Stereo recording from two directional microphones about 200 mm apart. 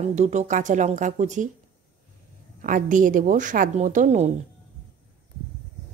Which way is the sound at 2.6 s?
40° right (ahead or behind).